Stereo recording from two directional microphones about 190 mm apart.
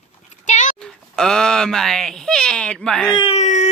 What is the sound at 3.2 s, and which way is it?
Speech, 35° left (ahead or behind).